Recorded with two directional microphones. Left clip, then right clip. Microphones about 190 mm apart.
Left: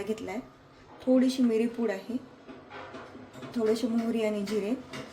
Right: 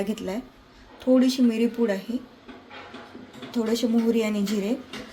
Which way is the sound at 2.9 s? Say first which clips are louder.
Right 2 dB; 15° right (ahead or behind).